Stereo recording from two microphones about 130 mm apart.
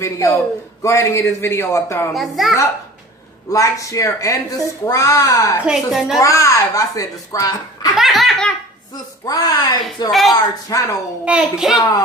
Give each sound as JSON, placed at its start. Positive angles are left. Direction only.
{"t": 0.0, "sound": "a child's voice", "side_deg": 25}
{"t": 2.1, "sound": "laughter", "side_deg": 0}
{"t": 3.5, "sound": "a child's voice", "side_deg": 25}
{"t": 5.6, "sound": "laughter", "side_deg": 0}
{"t": 6.1, "sound": "a child's voice", "side_deg": 25}
{"t": 7.9, "sound": "laughter", "side_deg": 0}
{"t": 8.9, "sound": "a child's voice", "side_deg": 30}
{"t": 11.2, "sound": "laughter", "side_deg": -5}